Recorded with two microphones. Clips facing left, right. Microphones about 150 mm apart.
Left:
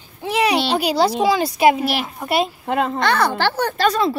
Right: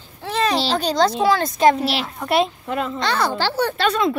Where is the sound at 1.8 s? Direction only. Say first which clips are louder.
Left 1 dB; 50° left (ahead or behind).